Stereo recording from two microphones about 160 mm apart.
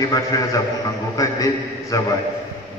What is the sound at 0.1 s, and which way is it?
A man's voice, 20° left (ahead or behind).